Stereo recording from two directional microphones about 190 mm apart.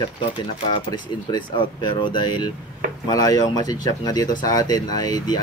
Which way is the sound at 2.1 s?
20° left (ahead or behind).